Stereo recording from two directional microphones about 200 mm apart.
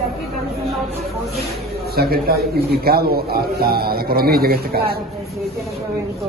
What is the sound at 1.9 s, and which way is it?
A man's voice, 50° right (ahead or behind).